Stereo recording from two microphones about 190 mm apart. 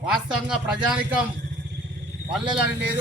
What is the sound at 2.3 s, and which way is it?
Speech, 5° right (ahead or behind).